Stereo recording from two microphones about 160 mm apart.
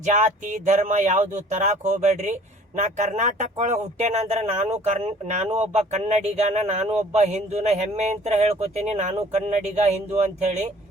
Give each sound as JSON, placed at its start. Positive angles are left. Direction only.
{"t": 0.0, "sound": "speech", "side_deg": -50}